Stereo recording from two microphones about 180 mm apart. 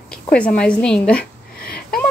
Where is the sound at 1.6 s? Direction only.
5° left (ahead or behind).